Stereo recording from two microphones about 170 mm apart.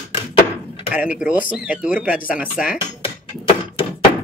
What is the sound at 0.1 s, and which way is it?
Chopping, 30° left (ahead or behind).